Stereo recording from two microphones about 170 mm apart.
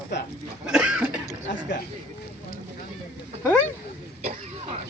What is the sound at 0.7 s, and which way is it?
Cough, 5° right (ahead or behind).